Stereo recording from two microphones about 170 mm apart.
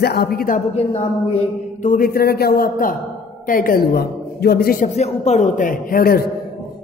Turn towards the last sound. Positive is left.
turn(degrees=60)  # may be behind; listen again after turning